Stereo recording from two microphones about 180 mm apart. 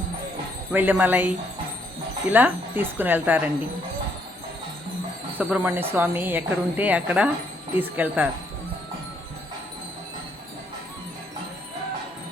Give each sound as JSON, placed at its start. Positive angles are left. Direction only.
{"t": 0.7, "sound": "a woman's voice", "side_deg": -10}
{"t": 2.3, "sound": "a woman's voice", "side_deg": -10}
{"t": 5.4, "sound": "a woman's voice", "side_deg": -10}